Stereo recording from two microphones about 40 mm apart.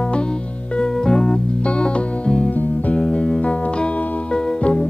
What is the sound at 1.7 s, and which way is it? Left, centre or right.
Music, left.